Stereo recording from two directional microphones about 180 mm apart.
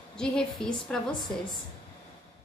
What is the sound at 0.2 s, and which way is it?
Speech, 5° left (ahead or behind).